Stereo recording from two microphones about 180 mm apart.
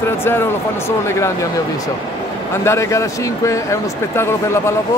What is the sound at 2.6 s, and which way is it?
Speech, 15° left (ahead or behind).